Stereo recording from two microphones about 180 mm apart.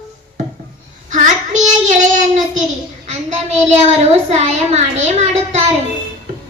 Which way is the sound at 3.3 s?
40° right (ahead or behind).